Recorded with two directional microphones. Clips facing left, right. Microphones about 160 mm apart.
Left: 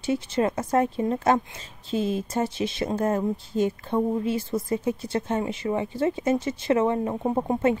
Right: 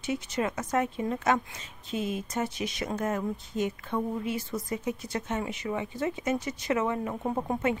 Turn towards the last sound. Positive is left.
turn(degrees=25)  # may be behind; listen again after turning